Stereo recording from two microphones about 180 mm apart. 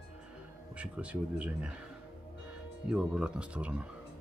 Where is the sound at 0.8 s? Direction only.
5° right (ahead or behind).